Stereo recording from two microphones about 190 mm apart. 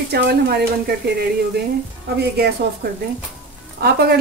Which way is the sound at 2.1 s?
55° right (ahead or behind).